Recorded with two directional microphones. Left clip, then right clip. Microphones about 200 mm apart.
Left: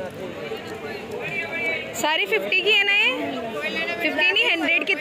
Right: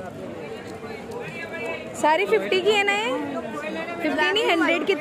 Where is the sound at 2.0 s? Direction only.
10° right (ahead or behind).